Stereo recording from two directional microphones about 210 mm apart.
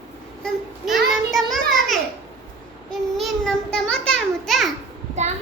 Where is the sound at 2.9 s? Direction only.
Centre (ahead or behind).